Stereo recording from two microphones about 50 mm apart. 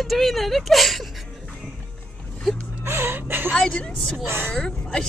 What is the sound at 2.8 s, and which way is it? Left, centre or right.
Chuckle, right.